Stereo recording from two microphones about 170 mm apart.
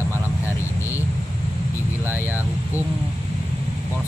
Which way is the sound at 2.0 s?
10° right (ahead or behind).